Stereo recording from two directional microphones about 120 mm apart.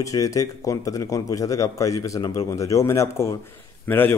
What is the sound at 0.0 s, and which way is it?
Speech, 25° left (ahead or behind).